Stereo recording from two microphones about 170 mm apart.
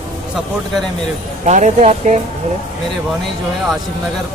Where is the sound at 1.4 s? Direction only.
45° right (ahead or behind).